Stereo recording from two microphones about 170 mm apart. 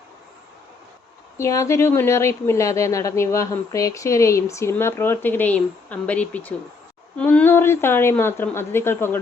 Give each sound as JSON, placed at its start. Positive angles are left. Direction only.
{"t": 1.4, "sound": "speech", "side_deg": 15}